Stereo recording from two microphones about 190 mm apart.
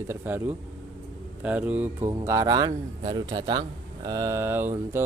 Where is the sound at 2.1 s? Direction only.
20° right (ahead or behind).